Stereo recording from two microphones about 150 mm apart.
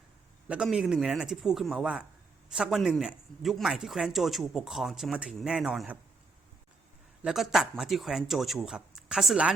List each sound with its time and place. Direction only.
0.4 s a man's voice: 5° right (ahead or behind)
7.2 s a man's voice: 5° right (ahead or behind)